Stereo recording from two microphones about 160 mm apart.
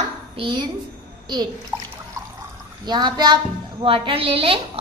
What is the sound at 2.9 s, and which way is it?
Child singing, 25° right (ahead or behind).